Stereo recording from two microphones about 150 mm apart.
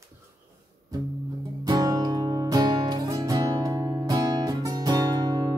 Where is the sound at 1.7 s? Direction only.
25° right (ahead or behind).